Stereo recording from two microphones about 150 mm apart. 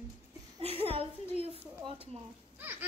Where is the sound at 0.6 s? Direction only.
40° right (ahead or behind).